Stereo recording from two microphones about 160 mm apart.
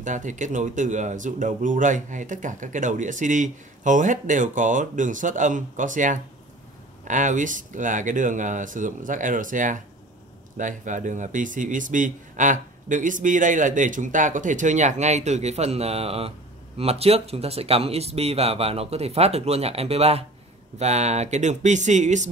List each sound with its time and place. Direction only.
0.0 s a man's voice: 50° right (ahead or behind)